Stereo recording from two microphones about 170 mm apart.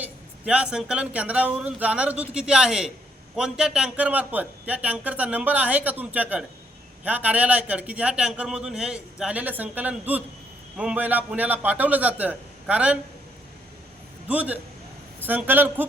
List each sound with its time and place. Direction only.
0.0 s a man's voice: 5° right (ahead or behind)
14.3 s a man's voice: 10° right (ahead or behind)